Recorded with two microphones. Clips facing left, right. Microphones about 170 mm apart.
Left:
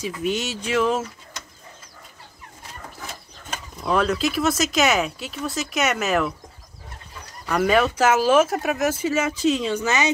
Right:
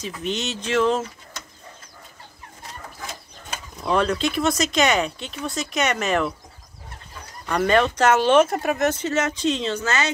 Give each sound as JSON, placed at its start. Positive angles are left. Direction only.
{"t": 0.0, "sound": "speech", "side_deg": 10}
{"t": 3.8, "sound": "speech", "side_deg": 0}
{"t": 7.4, "sound": "speech", "side_deg": 5}